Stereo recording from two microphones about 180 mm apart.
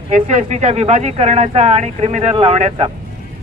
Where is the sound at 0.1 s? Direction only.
40° right (ahead or behind).